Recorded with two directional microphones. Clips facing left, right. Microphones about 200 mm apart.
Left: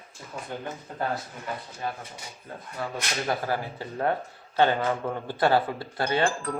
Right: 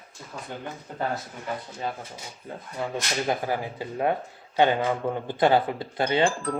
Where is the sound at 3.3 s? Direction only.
15° right (ahead or behind).